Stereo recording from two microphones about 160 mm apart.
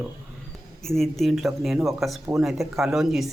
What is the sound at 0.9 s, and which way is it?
Speech, centre (ahead or behind).